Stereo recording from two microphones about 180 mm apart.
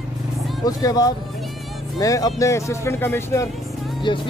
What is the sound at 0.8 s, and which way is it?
Speech, 20° left (ahead or behind).